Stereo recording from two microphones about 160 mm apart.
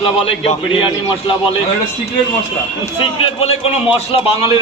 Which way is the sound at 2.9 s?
35° left (ahead or behind).